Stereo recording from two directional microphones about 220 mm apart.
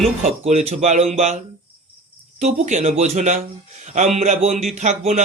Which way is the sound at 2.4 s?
30° right (ahead or behind).